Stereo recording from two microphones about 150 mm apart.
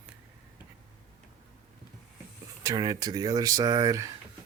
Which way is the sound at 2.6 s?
25° right (ahead or behind).